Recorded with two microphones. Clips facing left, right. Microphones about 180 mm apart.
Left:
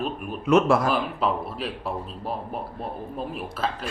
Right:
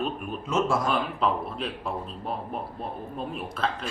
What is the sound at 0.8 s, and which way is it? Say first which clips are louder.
A man's voice: left 2 dB; 5° left (ahead or behind).